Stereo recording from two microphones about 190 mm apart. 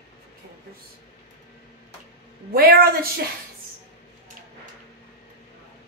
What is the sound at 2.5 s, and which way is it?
Speech, 55° right (ahead or behind).